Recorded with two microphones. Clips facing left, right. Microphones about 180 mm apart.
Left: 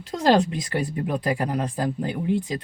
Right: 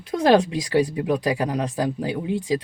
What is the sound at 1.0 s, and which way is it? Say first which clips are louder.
Speech: right 3 dB; 90° right.